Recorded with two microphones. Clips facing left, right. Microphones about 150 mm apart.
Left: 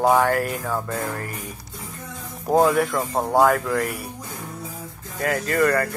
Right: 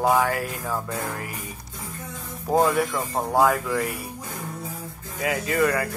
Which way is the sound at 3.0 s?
15° left (ahead or behind).